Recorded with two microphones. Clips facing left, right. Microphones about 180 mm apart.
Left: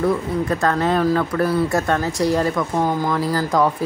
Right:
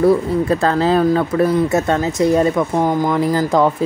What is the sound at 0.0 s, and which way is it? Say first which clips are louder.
Speech: right 6 dB; 30° right (ahead or behind).